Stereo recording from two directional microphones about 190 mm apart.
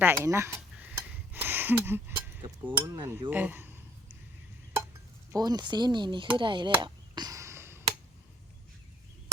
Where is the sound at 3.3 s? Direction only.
10° right (ahead or behind).